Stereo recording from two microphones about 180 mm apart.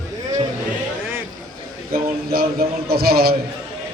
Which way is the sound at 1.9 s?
55° right (ahead or behind).